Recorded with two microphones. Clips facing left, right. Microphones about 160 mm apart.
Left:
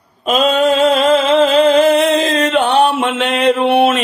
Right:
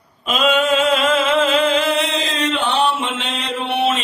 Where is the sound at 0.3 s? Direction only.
35° left (ahead or behind).